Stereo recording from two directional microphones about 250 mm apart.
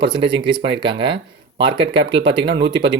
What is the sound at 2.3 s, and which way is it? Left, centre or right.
Speech, right.